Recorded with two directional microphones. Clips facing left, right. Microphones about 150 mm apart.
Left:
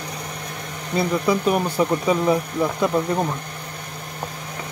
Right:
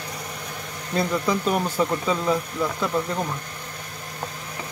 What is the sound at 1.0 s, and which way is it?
Speech, 10° left (ahead or behind).